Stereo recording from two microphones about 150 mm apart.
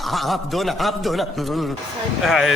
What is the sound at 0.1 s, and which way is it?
A man's voice, centre (ahead or behind).